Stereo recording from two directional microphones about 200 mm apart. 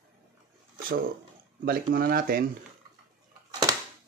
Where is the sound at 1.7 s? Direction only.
50° right (ahead or behind).